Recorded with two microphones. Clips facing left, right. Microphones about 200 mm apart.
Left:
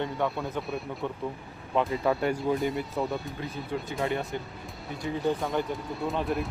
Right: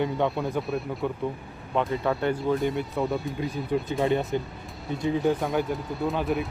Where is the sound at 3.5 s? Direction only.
20° right (ahead or behind).